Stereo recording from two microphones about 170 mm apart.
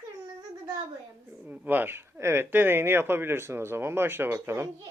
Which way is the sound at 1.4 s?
10° right (ahead or behind).